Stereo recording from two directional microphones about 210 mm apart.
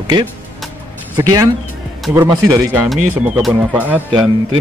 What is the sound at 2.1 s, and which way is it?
Speech, 15° right (ahead or behind).